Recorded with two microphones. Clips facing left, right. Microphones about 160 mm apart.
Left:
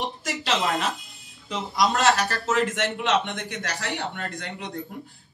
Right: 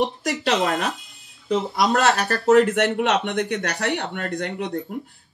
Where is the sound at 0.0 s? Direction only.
60° right (ahead or behind).